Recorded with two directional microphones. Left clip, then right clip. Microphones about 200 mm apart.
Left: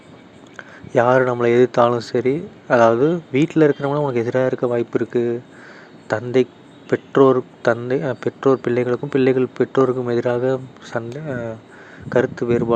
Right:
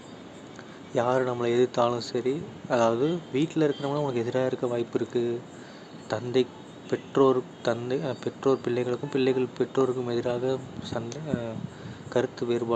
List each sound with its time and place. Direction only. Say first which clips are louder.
0.9 s a man's voice: left 10 dB; 35° left (ahead or behind)